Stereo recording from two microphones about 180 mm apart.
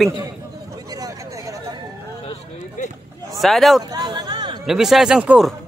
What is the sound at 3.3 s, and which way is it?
Speech, centre (ahead or behind).